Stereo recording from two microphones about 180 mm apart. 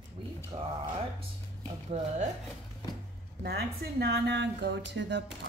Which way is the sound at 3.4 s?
65° right (ahead or behind).